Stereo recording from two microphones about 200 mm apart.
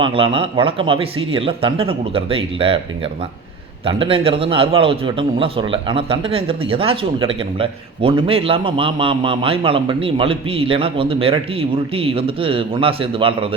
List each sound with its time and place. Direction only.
0.0 s a man's voice: 25° right (ahead or behind)
3.8 s a man's voice: 25° right (ahead or behind)